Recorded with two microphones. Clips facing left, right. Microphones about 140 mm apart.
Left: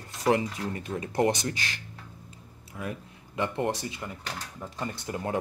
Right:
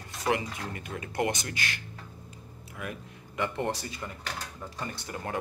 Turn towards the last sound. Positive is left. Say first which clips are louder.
# left 4 dB
turn(degrees=20)  # may be behind; listen again after turning